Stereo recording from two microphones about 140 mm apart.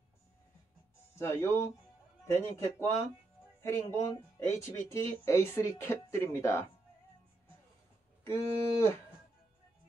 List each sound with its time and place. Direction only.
1.1 s speech: 20° left (ahead or behind)
8.2 s speech: 20° left (ahead or behind)